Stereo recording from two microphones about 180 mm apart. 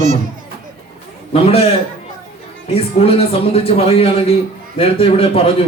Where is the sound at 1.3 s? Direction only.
35° left (ahead or behind).